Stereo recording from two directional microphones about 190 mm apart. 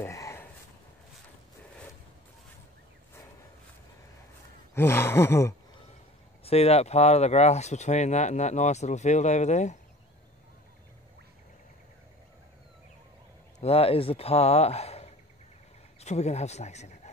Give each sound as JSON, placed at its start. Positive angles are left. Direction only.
{"t": 0.0, "sound": "a sound", "side_deg": 15}
{"t": 4.7, "sound": "speech", "side_deg": 10}
{"t": 6.4, "sound": "speech", "side_deg": 30}
{"t": 13.6, "sound": "speech", "side_deg": 30}